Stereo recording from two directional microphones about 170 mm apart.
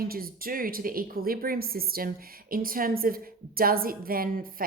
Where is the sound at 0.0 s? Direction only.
60° right (ahead or behind).